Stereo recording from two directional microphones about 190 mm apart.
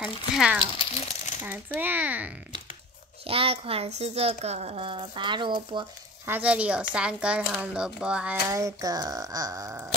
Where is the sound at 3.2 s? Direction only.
30° right (ahead or behind).